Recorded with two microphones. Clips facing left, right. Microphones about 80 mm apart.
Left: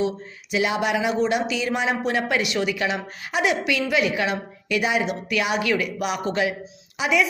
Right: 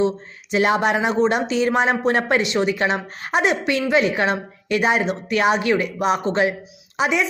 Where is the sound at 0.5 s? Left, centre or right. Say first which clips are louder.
Right 4 dB; right.